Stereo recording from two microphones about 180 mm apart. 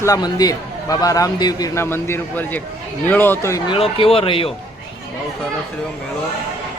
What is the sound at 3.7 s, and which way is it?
Speech, 30° left (ahead or behind).